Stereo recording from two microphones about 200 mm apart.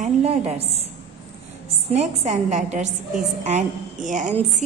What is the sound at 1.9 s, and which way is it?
A woman's voice, 35° right (ahead or behind).